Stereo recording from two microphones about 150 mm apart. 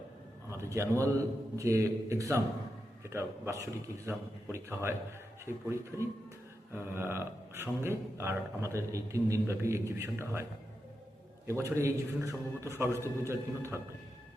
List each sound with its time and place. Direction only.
0.5 s a man's voice: 20° right (ahead or behind)
11.4 s a man's voice: 20° right (ahead or behind)